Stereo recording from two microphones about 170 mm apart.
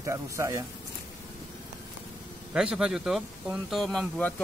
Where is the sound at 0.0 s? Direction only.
15° right (ahead or behind).